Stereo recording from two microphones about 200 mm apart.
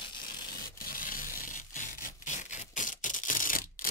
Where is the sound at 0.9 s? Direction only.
45° left (ahead or behind).